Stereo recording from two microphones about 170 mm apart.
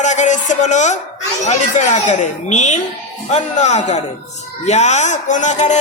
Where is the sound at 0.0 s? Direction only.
45° left (ahead or behind).